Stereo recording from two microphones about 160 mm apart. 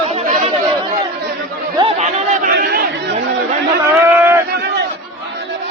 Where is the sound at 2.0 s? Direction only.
50° right (ahead or behind).